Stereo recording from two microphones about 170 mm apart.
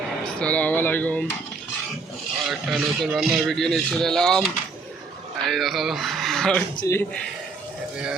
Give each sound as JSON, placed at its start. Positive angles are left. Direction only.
{"t": 0.3, "sound": "speech", "side_deg": 5}
{"t": 2.5, "sound": "speech", "side_deg": 0}
{"t": 5.5, "sound": "speech", "side_deg": 0}
{"t": 6.7, "sound": "speech", "side_deg": 20}